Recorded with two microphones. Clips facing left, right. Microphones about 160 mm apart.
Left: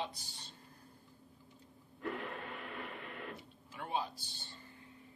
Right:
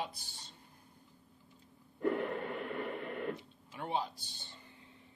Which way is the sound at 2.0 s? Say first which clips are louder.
Right 8 dB; 55° right (ahead or behind).